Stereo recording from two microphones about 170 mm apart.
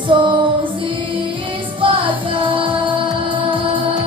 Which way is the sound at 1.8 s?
30° right (ahead or behind).